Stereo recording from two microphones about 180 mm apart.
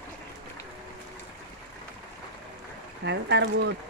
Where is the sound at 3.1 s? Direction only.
75° right (ahead or behind).